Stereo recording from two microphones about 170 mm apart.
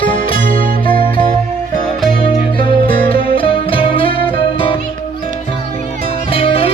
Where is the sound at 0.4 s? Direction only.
55° right (ahead or behind).